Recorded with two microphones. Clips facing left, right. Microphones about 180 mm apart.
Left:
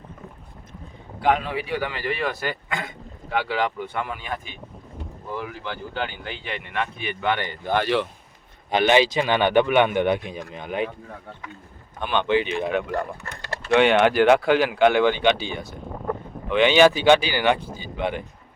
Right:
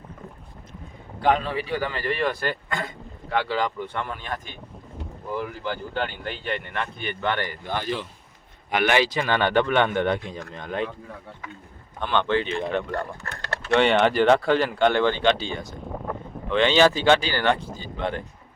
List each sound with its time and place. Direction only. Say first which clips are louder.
1.2 s speech: even; 10° left (ahead or behind)
7.6 s speech: left 6 dB; 65° left (ahead or behind)
8.7 s speech: left 3 dB; 20° left (ahead or behind)
11.9 s speech: left 1 dB; 15° left (ahead or behind)